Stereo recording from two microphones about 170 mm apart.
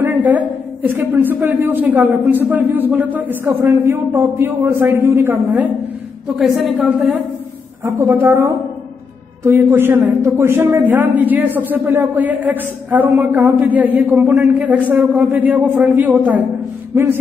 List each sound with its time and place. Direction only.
0.0 s a woman's voice: 10° right (ahead or behind)
6.3 s a woman's voice: centre (ahead or behind)